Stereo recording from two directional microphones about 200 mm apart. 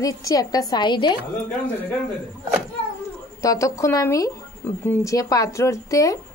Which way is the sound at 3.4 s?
15° left (ahead or behind).